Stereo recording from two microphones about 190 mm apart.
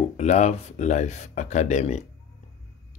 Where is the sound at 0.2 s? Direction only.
35° left (ahead or behind).